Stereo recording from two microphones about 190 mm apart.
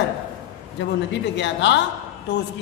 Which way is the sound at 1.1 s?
70° left (ahead or behind).